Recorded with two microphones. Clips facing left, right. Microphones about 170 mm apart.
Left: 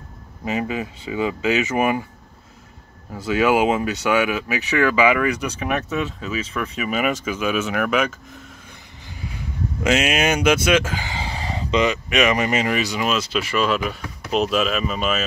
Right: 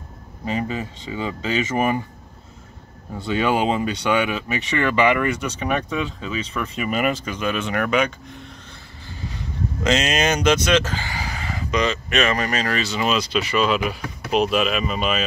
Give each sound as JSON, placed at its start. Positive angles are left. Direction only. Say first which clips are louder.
{"t": 0.5, "sound": "speech", "louder": "left 1 dB", "side_deg": 10}
{"t": 3.2, "sound": "speech", "louder": "left 3 dB", "side_deg": 5}
{"t": 11.1, "sound": "a sound", "louder": "left 2 dB", "side_deg": 30}
{"t": 11.8, "sound": "speech", "louder": "left 2 dB", "side_deg": 15}